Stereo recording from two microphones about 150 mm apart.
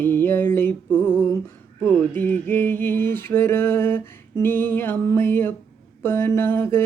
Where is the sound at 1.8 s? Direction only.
10° left (ahead or behind).